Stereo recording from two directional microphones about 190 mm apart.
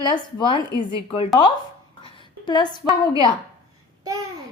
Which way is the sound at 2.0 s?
25° left (ahead or behind).